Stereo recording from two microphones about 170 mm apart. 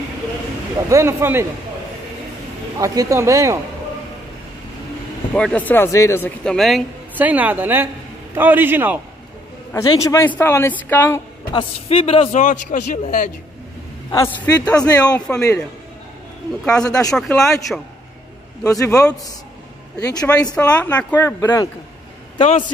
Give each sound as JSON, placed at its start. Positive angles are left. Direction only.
{"t": 0.8, "sound": "a woman's voice", "side_deg": -15}
{"t": 2.8, "sound": "speech", "side_deg": -20}
{"t": 5.3, "sound": "a man's voice", "side_deg": 5}
{"t": 7.2, "sound": "a woman's voice", "side_deg": -10}
{"t": 9.7, "sound": "a man's voice", "side_deg": 15}
{"t": 11.5, "sound": "a man's voice", "side_deg": 35}
{"t": 14.1, "sound": "a man's voice", "side_deg": 15}
{"t": 15.1, "sound": "speech", "side_deg": 5}
{"t": 16.6, "sound": "speech", "side_deg": 5}
{"t": 18.6, "sound": "a man's voice", "side_deg": 20}
{"t": 20.5, "sound": "a man's voice", "side_deg": 10}
{"t": 21.4, "sound": "a man's voice", "side_deg": 20}
{"t": 22.4, "sound": "a man's voice", "side_deg": 45}